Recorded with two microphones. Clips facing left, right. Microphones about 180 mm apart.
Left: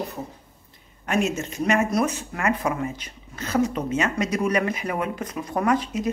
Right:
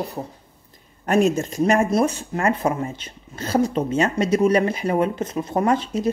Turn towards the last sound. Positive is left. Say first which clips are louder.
# right 2 dB
turn(degrees=-30)  # may be behind; listen again after turning